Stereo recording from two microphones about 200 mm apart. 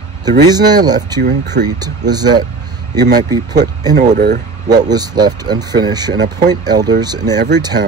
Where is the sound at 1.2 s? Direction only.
60° right (ahead or behind).